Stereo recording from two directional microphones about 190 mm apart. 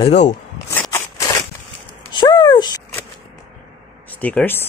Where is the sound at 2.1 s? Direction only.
20° left (ahead or behind).